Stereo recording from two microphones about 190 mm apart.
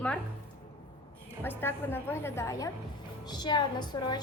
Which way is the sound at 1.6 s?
10° left (ahead or behind).